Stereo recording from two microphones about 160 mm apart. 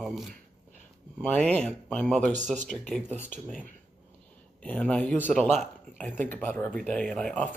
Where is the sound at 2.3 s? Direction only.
50° right (ahead or behind).